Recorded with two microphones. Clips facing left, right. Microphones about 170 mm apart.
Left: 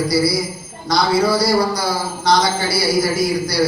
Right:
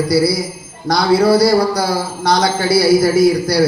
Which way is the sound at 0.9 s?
60° right (ahead or behind).